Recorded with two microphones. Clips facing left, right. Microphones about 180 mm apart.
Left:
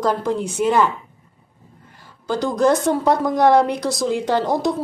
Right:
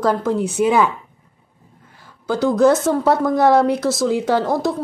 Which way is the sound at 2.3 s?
5° right (ahead or behind).